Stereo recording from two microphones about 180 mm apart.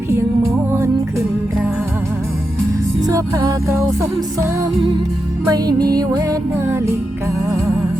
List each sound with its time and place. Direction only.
3.0 s music: 20° right (ahead or behind)
5.5 s music: 20° right (ahead or behind)